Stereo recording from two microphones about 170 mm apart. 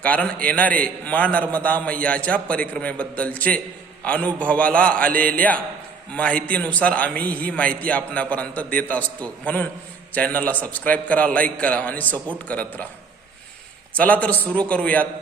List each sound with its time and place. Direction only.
0.0 s a man's voice: 5° left (ahead or behind)
5.1 s speech: 55° right (ahead or behind)
6.1 s a man's voice: 10° left (ahead or behind)
13.9 s a man's voice: 10° left (ahead or behind)